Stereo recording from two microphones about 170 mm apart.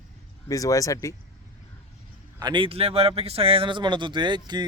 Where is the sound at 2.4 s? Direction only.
30° right (ahead or behind).